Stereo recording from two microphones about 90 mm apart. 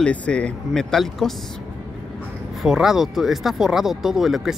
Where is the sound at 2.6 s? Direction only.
5° right (ahead or behind).